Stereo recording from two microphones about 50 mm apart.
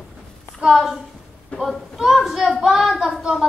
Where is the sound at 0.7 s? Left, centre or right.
Centre.